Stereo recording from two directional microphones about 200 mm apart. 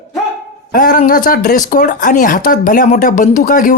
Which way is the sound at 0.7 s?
40° left (ahead or behind).